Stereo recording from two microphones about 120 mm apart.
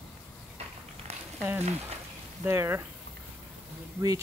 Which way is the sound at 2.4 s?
20° right (ahead or behind).